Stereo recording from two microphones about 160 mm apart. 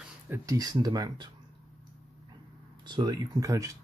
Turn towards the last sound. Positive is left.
turn(degrees=-20)  # may be behind; listen again after turning